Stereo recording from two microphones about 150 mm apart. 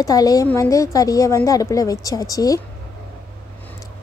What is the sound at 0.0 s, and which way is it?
A woman's voice, 25° left (ahead or behind).